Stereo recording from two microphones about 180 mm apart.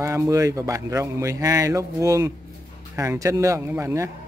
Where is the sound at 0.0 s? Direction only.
15° right (ahead or behind).